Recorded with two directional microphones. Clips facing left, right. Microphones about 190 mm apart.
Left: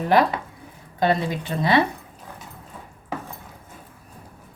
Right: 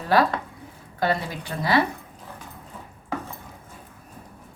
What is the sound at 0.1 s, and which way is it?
Speech, 20° left (ahead or behind).